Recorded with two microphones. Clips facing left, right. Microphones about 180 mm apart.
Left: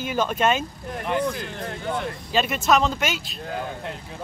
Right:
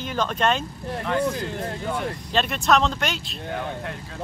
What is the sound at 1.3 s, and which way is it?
Speech, 20° right (ahead or behind).